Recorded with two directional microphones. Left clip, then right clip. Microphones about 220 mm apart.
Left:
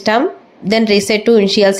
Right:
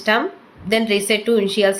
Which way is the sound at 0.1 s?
35° left (ahead or behind).